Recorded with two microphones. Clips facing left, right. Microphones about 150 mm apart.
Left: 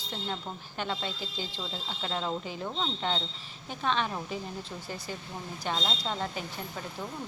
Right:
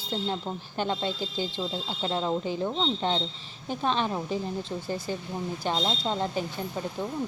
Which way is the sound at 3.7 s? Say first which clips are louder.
Right 3 dB; 35° right (ahead or behind).